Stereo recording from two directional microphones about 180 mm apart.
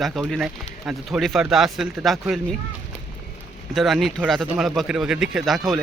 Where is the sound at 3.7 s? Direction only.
Centre (ahead or behind).